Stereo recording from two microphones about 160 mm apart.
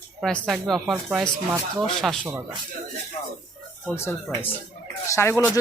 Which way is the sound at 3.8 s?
15° left (ahead or behind).